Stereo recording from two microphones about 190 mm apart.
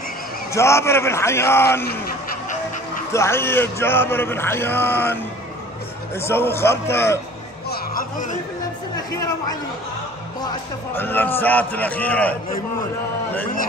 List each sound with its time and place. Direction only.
0.6 s speech: 15° left (ahead or behind)
3.1 s speech: 15° left (ahead or behind)
7.7 s music: 45° left (ahead or behind)
9.1 s speech: 15° left (ahead or behind)
11.0 s speech: 10° left (ahead or behind)